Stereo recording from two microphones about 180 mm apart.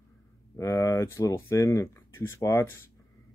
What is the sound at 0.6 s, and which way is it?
Speech, 15° left (ahead or behind).